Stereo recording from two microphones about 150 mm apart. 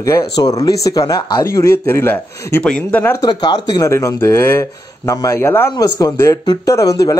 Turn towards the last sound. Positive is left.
turn(degrees=20)  # may be behind; listen again after turning